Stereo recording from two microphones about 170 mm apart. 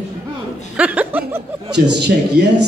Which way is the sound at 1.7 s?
90° right.